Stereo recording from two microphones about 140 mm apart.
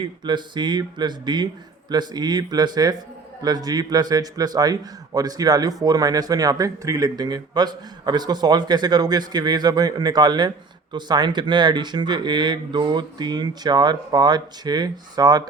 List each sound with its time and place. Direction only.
0.0 s a man's voice: 30° right (ahead or behind)